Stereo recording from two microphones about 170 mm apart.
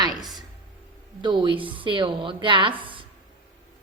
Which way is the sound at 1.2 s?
30° right (ahead or behind).